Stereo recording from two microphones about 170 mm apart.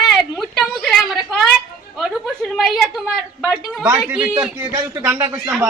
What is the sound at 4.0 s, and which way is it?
A man's voice, 10° right (ahead or behind).